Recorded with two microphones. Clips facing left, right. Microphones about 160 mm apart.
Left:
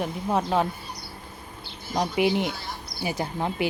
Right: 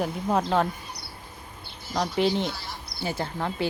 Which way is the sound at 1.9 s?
20° left (ahead or behind).